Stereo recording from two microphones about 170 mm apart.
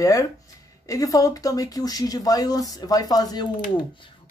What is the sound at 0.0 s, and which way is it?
Speech, 20° left (ahead or behind).